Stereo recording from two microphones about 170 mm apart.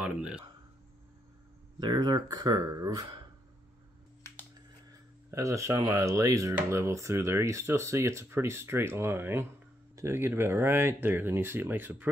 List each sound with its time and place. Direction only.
0.0 s speech: 5° right (ahead or behind)
1.8 s speech: 25° right (ahead or behind)
5.3 s speech: 20° right (ahead or behind)